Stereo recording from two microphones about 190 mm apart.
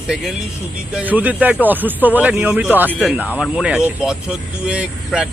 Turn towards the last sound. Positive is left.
turn(degrees=-5)  # may be behind; listen again after turning